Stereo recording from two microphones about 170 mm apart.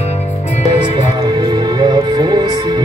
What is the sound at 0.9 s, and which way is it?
Music, 25° right (ahead or behind).